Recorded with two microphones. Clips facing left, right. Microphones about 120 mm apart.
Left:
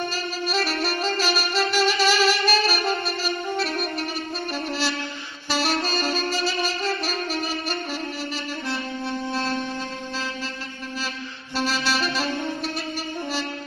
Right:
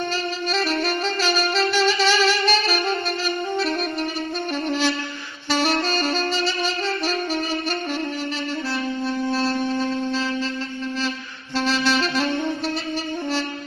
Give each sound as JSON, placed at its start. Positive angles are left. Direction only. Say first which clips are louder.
{"t": 0.8, "sound": "saxophone", "louder": "right 1 dB", "side_deg": 5}
{"t": 4.6, "sound": "music", "louder": "right 6 dB", "side_deg": 5}
{"t": 6.0, "sound": "music", "louder": "right 2 dB", "side_deg": 10}
{"t": 9.0, "sound": "wind instrument", "louder": "right 5 dB", "side_deg": 20}
{"t": 11.5, "sound": "music", "louder": "right 4 dB", "side_deg": 10}